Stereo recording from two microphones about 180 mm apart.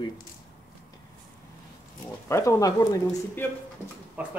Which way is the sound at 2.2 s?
15° left (ahead or behind).